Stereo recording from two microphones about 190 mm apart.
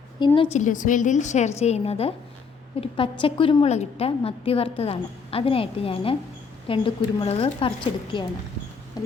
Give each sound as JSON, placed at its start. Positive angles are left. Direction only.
{"t": 0.2, "sound": "a woman's voice", "side_deg": 25}
{"t": 0.5, "sound": "a woman's voice", "side_deg": 40}
{"t": 9.0, "sound": "a sound", "side_deg": 20}